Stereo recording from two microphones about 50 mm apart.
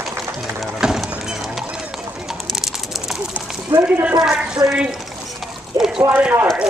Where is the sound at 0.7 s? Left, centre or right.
Centre.